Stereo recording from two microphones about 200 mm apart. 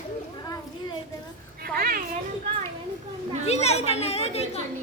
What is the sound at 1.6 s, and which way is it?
Children playing, 45° right (ahead or behind).